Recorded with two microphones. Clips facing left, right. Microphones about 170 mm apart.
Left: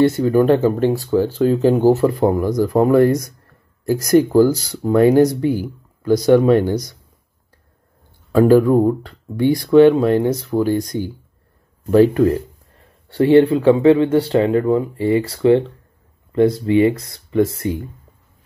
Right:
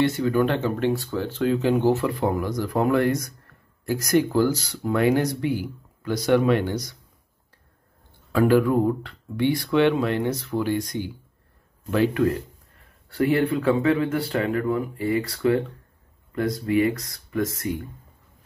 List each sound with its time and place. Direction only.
0.0 s speech: 40° left (ahead or behind)
8.3 s speech: 40° left (ahead or behind)